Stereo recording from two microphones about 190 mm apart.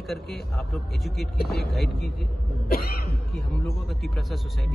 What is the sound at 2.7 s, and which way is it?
Cough, 55° left (ahead or behind).